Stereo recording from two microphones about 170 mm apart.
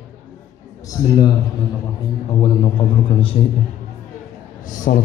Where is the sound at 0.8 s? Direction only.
20° left (ahead or behind).